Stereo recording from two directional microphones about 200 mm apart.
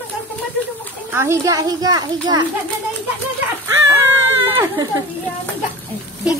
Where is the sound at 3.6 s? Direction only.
15° right (ahead or behind).